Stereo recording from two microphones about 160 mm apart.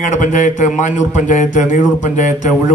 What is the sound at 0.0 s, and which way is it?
A man's voice, 50° left (ahead or behind).